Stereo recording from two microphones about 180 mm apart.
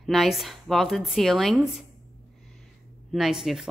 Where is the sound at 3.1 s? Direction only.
Centre (ahead or behind).